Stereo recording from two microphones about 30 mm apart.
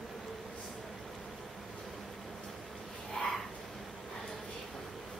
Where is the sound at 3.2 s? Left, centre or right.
Centre.